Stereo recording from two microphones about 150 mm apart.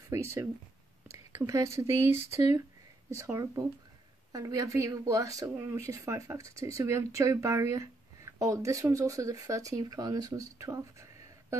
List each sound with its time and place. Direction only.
0.1 s speech: 20° right (ahead or behind)
3.2 s speech: 20° right (ahead or behind)